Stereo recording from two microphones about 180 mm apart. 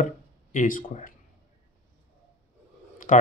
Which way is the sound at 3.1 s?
50° left (ahead or behind).